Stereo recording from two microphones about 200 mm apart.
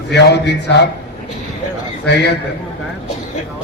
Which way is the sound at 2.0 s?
55° left (ahead or behind).